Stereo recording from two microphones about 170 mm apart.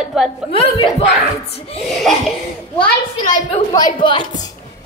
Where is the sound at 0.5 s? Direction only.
35° left (ahead or behind).